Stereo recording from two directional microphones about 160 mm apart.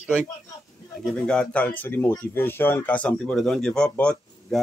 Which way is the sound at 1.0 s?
5° left (ahead or behind).